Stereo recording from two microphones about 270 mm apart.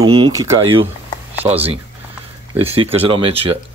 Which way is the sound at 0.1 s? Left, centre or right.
Centre.